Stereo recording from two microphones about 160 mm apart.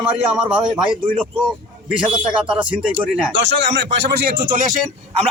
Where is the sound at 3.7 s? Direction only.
90° right; by 4.8 s 60° right (ahead or behind).